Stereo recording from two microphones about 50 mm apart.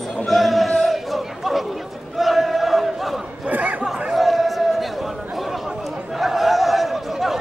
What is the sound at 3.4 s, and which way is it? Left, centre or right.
Chatter, right.